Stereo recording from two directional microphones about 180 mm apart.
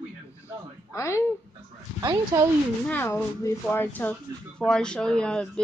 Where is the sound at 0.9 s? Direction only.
15° left (ahead or behind).